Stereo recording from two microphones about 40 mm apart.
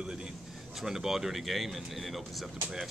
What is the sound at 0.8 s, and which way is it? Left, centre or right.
Speech, centre.